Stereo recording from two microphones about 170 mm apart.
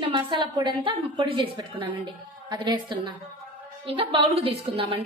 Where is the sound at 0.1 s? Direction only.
30° right (ahead or behind).